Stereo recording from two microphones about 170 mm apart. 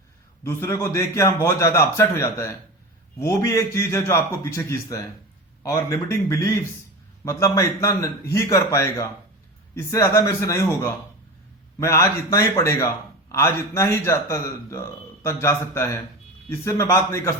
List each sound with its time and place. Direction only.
0.4 s a man's voice: 15° left (ahead or behind)